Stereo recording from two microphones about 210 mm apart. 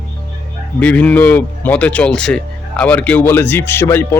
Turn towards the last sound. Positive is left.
turn(degrees=10)  # may be behind; listen again after turning